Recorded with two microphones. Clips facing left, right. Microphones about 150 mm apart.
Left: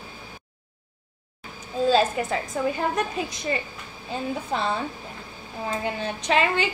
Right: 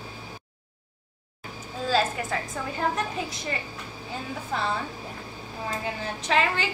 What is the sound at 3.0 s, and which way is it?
Speech, 20° left (ahead or behind).